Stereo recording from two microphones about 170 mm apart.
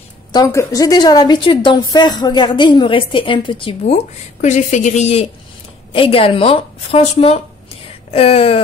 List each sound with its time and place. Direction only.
0.3 s a woman's voice: 20° left (ahead or behind); by 8.5 s 35° left (ahead or behind)